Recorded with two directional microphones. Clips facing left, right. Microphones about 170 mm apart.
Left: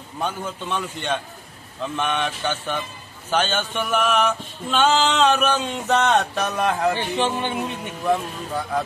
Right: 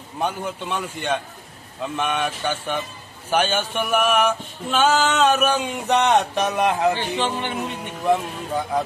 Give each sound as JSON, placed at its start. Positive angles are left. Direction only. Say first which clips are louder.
{"t": 0.2, "sound": "male singing", "louder": "right 2 dB", "side_deg": -15}
{"t": 7.0, "sound": "a man's voice", "louder": "left 1 dB", "side_deg": 20}
{"t": 8.0, "sound": "speech", "louder": "right 2 dB", "side_deg": -20}